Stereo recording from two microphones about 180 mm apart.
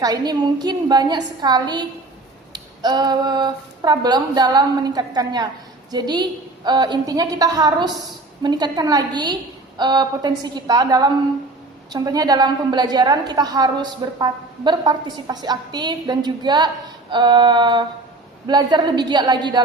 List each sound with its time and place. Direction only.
0.0 s a woman's voice: 20° right (ahead or behind)